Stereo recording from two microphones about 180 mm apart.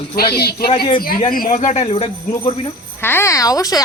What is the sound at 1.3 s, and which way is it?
Speech, 50° left (ahead or behind).